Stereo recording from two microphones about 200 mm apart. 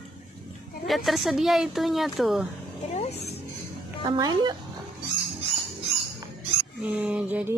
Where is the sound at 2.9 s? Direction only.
30° left (ahead or behind).